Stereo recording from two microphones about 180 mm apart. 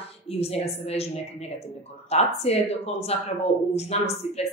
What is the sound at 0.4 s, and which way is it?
Speech, 35° left (ahead or behind).